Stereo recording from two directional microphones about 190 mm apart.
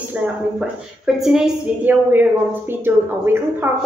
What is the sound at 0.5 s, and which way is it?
A woman's voice, centre (ahead or behind).